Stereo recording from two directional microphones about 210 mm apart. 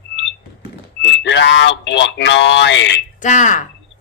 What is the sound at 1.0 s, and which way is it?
Speech, 60° left (ahead or behind).